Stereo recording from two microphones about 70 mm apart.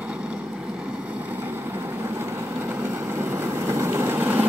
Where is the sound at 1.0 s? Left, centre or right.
Right.